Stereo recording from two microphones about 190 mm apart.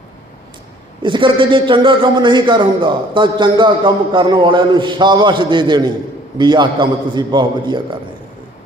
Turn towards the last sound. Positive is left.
turn(degrees=-25)  # may be behind; listen again after turning